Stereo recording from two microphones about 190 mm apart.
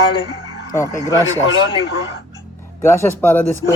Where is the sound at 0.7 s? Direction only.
15° left (ahead or behind).